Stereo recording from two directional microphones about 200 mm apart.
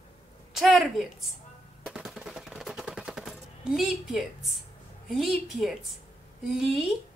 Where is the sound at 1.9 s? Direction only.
Centre (ahead or behind).